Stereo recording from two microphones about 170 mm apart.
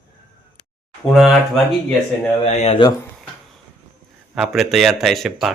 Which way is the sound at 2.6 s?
30° left (ahead or behind).